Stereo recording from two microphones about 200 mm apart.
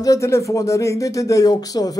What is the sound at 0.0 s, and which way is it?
Speech, 15° left (ahead or behind).